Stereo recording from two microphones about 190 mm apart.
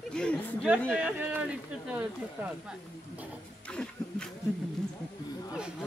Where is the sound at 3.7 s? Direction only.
5° left (ahead or behind).